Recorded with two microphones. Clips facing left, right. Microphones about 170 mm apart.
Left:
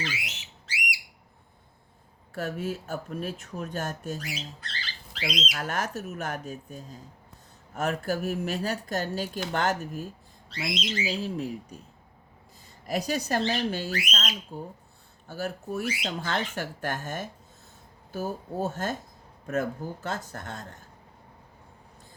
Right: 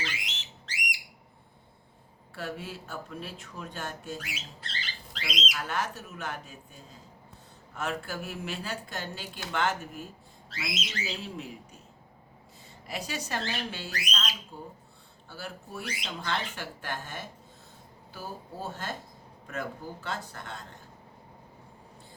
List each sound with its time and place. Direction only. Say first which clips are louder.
0.1 s a sound: left 3 dB; 10° left (ahead or behind)
2.3 s speech: left 6 dB; 45° left (ahead or behind)
5.1 s speech: left 5 dB; centre (ahead or behind)
5.5 s speech: even; 45° left (ahead or behind)
10.5 s a sound: left 5 dB; centre (ahead or behind)
11.2 s speech: left 8 dB; 35° left (ahead or behind)
12.9 s speech: left 7 dB; 40° left (ahead or behind)
13.9 s speech: left 4 dB; 35° right (ahead or behind)
15.3 s speech: left 9 dB; 45° left (ahead or behind)
15.8 s speech: left 6 dB; 5° left (ahead or behind)
16.0 s speech: left 4 dB; 45° left (ahead or behind)